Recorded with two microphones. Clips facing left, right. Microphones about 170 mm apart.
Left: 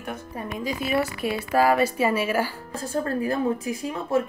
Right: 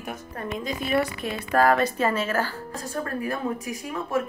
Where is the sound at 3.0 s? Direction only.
30° left (ahead or behind).